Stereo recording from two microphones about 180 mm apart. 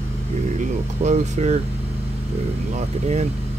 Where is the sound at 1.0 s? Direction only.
40° right (ahead or behind).